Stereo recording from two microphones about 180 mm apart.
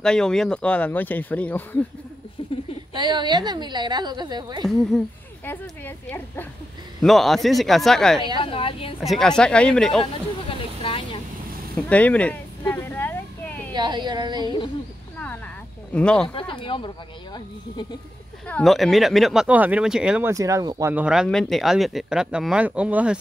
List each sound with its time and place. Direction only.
0.0 s speech: 5° left (ahead or behind)
2.9 s a woman's voice: 25° right (ahead or behind)
4.6 s speech: 5° left (ahead or behind)
8.4 s speech: 30° left (ahead or behind)
9.0 s speech: centre (ahead or behind)
10.8 s vehicle: 30° left (ahead or behind)
11.7 s a sound: 10° left (ahead or behind)
13.7 s a woman's voice: 25° right (ahead or behind)
15.1 s a sound: 10° left (ahead or behind)
16.3 s speech: 30° left (ahead or behind)
18.5 s speech: centre (ahead or behind)